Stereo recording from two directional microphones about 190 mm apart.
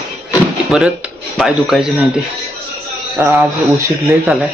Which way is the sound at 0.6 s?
5° right (ahead or behind).